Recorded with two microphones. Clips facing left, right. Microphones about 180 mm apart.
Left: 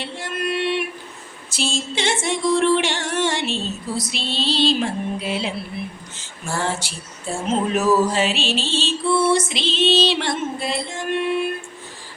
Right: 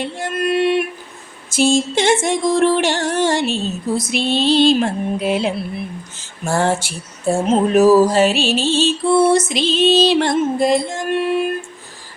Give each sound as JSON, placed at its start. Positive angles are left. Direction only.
{"t": 0.0, "sound": "a sound", "side_deg": -50}
{"t": 1.5, "sound": "music", "side_deg": -50}
{"t": 7.8, "sound": "music", "side_deg": -40}